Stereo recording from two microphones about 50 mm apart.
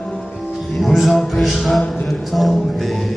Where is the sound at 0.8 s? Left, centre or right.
Centre.